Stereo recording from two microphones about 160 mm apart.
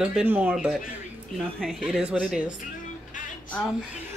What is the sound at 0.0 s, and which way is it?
Speech, 5° right (ahead or behind).